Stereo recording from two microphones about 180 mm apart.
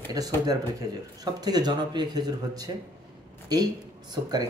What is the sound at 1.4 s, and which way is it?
Speech, 20° right (ahead or behind).